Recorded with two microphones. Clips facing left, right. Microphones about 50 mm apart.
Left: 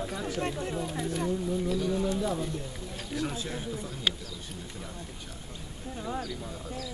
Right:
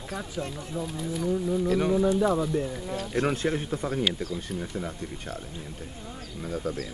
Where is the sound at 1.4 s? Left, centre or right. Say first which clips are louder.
Right 4 dB; centre.